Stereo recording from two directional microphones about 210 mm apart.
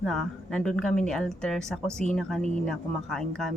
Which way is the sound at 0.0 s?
Centre (ahead or behind).